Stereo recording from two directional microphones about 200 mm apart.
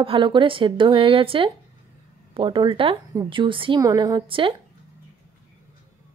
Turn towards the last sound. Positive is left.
turn(degrees=-25)  # may be behind; listen again after turning